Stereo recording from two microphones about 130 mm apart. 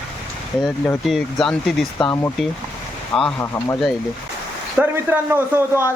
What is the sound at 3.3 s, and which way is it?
Speech, 20° left (ahead or behind).